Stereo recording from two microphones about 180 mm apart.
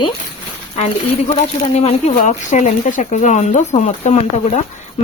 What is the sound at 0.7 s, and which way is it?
Speech, 35° left (ahead or behind).